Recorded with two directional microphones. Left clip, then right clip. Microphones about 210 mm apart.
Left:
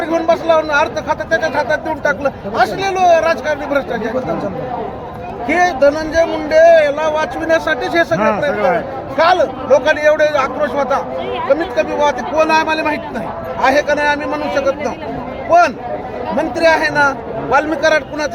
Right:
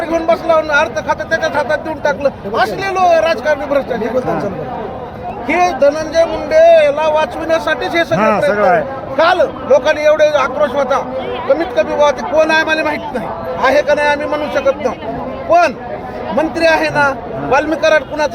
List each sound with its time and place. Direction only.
0.1 s speech: 10° right (ahead or behind)
5.5 s speech: 5° right (ahead or behind)
8.5 s a man's voice: 50° right (ahead or behind)
9.1 s a man's voice: 5° right (ahead or behind)